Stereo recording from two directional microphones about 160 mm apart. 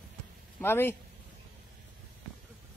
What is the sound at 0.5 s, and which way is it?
Speech, 15° left (ahead or behind).